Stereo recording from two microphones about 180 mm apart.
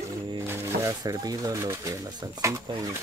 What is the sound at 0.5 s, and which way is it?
Speech, 20° right (ahead or behind).